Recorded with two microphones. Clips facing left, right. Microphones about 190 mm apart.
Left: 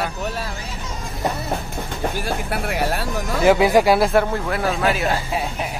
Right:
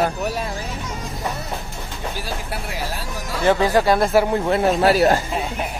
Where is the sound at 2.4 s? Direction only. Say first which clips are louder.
Left 6 dB; 60° left (ahead or behind).